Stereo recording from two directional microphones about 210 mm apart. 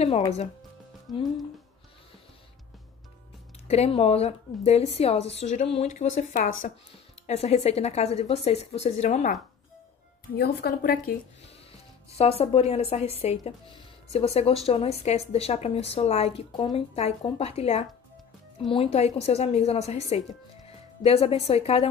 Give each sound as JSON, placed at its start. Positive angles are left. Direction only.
{"t": 1.1, "sound": "speech", "side_deg": 0}
{"t": 3.6, "sound": "speech", "side_deg": 30}
{"t": 10.3, "sound": "a woman's voice", "side_deg": 50}
{"t": 12.2, "sound": "speech", "side_deg": 30}